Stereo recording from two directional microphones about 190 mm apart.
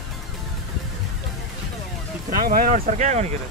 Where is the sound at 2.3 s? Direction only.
50° right (ahead or behind).